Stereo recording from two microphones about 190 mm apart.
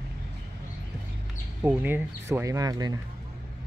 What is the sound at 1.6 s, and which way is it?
Speech, 10° right (ahead or behind).